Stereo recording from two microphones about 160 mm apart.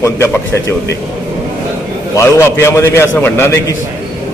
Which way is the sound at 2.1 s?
15° left (ahead or behind).